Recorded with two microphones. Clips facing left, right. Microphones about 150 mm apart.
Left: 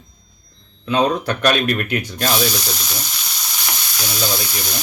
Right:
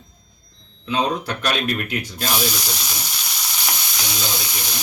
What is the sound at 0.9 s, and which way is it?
Speech, 60° left (ahead or behind).